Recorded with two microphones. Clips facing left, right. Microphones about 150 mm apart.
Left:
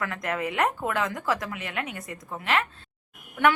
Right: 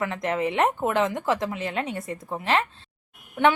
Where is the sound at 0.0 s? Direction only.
25° right (ahead or behind).